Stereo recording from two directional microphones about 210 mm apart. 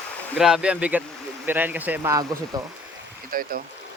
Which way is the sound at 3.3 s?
40° right (ahead or behind).